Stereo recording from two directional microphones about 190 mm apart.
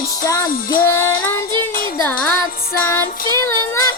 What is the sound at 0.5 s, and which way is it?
Music, 50° left (ahead or behind).